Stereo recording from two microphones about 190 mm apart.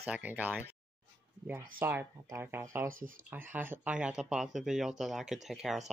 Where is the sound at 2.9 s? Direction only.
45° right (ahead or behind).